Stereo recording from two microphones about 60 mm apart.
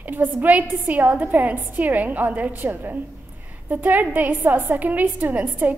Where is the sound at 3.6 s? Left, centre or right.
Right.